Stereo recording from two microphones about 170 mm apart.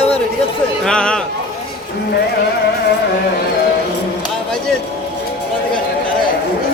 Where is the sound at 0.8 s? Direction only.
5° left (ahead or behind).